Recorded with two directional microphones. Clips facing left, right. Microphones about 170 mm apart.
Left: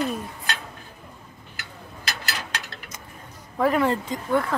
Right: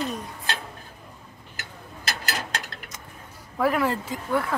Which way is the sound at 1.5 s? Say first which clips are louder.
Even; 45° right (ahead or behind).